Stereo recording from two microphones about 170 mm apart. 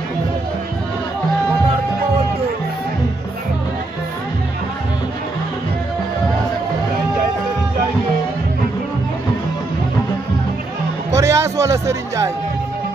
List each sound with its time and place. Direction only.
11.1 s music: 15° right (ahead or behind)